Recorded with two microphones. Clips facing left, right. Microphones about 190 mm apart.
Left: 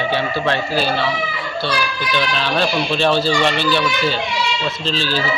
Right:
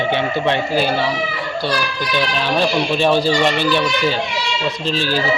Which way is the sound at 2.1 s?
10° right (ahead or behind).